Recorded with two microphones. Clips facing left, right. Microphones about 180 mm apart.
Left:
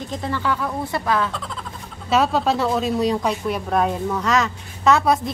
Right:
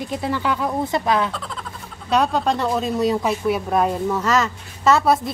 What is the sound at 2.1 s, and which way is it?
Speech, centre (ahead or behind).